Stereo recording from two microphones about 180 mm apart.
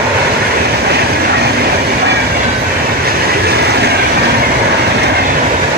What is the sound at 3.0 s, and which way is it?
Train, 60° right (ahead or behind).